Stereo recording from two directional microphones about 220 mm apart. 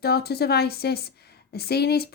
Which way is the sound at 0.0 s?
45° left (ahead or behind).